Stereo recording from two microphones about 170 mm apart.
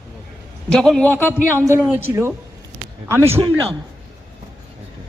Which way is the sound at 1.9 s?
15° right (ahead or behind).